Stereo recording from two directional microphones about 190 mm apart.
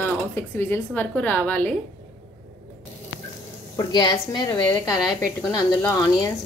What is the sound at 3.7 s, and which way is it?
A woman's voice, 20° left (ahead or behind).